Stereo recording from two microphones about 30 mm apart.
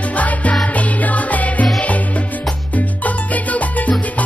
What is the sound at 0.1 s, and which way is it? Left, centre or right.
Music, left.